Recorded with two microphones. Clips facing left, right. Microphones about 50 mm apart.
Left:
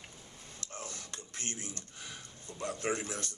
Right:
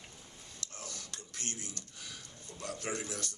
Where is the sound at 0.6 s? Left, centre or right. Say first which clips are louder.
Left 3 dB; left.